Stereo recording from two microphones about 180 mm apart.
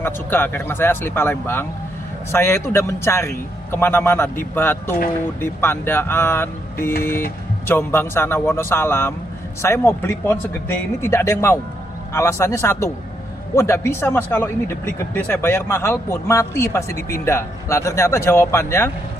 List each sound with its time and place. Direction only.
0.0 s speech: 10° left (ahead or behind)